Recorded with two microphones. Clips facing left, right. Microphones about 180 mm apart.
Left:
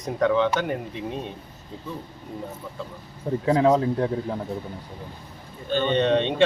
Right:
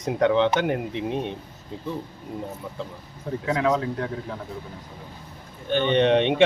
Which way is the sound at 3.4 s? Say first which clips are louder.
Left 4 dB; 35° left (ahead or behind).